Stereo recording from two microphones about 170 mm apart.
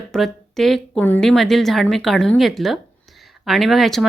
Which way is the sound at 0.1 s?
Centre (ahead or behind).